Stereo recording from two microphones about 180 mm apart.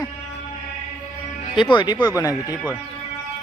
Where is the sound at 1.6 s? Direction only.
25° left (ahead or behind).